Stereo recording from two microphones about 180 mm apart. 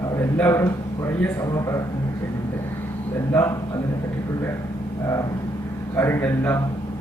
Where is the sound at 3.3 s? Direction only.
15° left (ahead or behind).